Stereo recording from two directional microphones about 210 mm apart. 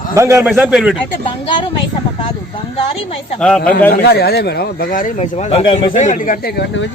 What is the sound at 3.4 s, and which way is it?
Speech, 5° left (ahead or behind).